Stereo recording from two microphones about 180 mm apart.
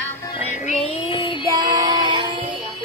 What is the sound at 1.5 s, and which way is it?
Child singing, 25° right (ahead or behind).